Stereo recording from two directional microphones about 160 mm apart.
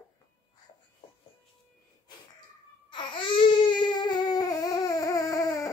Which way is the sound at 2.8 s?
30° left (ahead or behind).